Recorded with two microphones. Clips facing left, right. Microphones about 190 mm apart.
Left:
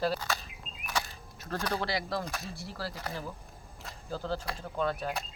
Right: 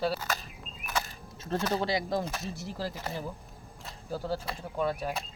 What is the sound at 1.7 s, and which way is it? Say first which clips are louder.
Speech: right 3 dB; 20° right (ahead or behind).